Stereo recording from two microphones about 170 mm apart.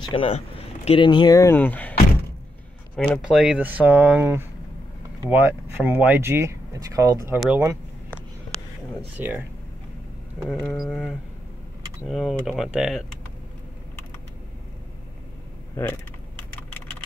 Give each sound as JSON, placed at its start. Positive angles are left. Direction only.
{"t": 0.1, "sound": "speech", "side_deg": 30}
{"t": 3.0, "sound": "speech", "side_deg": -5}
{"t": 7.3, "sound": "speech", "side_deg": -5}
{"t": 9.2, "sound": "speech", "side_deg": -10}
{"t": 15.8, "sound": "speech", "side_deg": 10}